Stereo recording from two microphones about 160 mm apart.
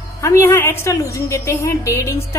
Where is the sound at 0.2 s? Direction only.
15° left (ahead or behind).